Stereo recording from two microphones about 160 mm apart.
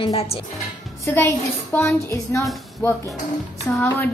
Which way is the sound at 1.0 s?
15° left (ahead or behind).